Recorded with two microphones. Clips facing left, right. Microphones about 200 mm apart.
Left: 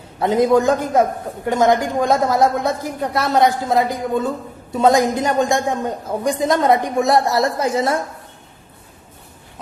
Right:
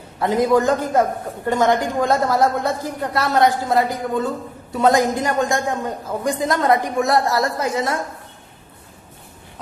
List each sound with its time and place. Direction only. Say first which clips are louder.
0.2 s a man's voice: left 2 dB; 20° left (ahead or behind)